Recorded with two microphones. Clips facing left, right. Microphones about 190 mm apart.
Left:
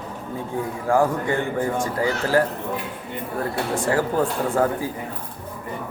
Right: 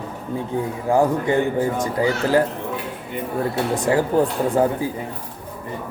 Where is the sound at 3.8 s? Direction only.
20° right (ahead or behind).